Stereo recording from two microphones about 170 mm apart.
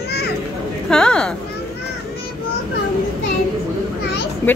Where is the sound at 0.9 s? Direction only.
5° left (ahead or behind).